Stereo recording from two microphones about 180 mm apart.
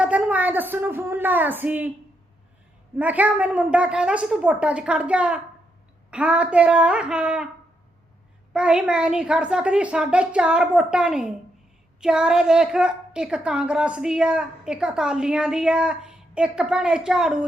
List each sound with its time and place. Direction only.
0.0 s a woman's voice: 10° right (ahead or behind)
3.0 s a woman's voice: 10° right (ahead or behind)
8.5 s a woman's voice: 5° right (ahead or behind)